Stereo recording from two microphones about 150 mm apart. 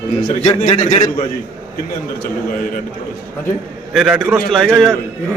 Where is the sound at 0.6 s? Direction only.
50° left (ahead or behind).